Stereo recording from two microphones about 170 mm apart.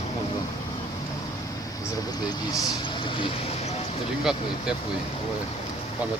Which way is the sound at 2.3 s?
20° left (ahead or behind).